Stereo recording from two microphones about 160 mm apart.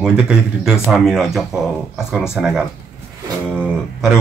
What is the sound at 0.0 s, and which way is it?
Speech, 5° right (ahead or behind).